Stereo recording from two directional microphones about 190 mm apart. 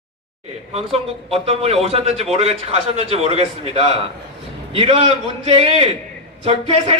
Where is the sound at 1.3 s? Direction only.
30° right (ahead or behind).